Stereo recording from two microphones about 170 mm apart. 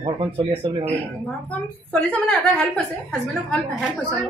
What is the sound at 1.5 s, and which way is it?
A woman's voice, 5° left (ahead or behind).